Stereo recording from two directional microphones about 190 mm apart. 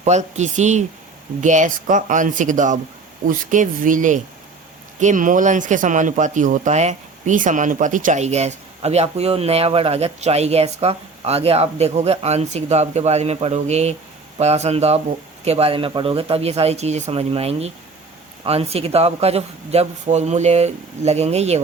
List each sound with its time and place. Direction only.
0.0 s speech: 40° right (ahead or behind)